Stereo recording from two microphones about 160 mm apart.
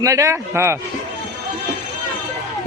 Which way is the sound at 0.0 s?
20° right (ahead or behind).